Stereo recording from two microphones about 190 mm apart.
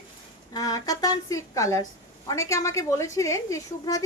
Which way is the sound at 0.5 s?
20° left (ahead or behind).